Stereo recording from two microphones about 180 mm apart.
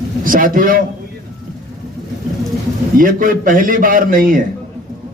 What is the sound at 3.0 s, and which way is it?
A man's voice, 50° right (ahead or behind).